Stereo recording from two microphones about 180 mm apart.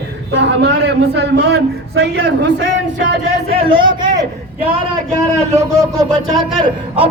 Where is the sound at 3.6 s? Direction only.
25° right (ahead or behind).